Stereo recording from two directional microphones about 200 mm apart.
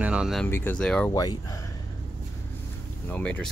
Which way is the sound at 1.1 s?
20° left (ahead or behind).